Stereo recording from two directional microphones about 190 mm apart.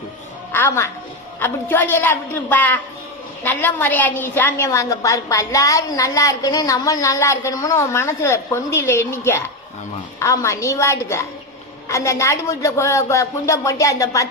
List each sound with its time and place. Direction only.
0.5 s a woman's voice: 10° left (ahead or behind)